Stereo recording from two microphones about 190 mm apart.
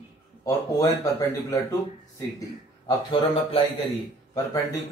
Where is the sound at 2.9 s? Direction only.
25° left (ahead or behind).